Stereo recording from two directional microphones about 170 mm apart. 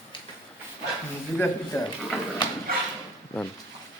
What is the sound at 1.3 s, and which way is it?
Speech, 15° left (ahead or behind).